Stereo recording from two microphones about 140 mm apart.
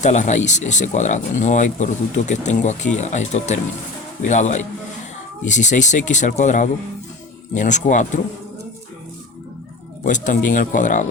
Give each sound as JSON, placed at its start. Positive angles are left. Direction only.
{"t": 0.0, "sound": "speech", "side_deg": 60}
{"t": 10.0, "sound": "speech", "side_deg": 65}